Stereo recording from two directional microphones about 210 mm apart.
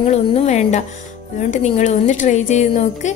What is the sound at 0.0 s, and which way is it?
Music, 30° left (ahead or behind).